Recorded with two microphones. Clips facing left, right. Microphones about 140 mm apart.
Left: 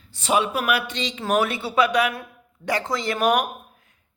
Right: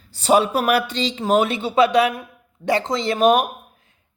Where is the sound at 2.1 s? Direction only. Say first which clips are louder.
Right 2 dB; 15° right (ahead or behind).